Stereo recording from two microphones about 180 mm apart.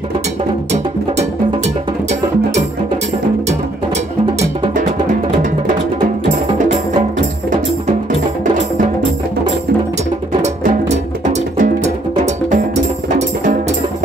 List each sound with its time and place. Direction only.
5.9 s music: 50° right (ahead or behind)
11.2 s music: 45° right (ahead or behind)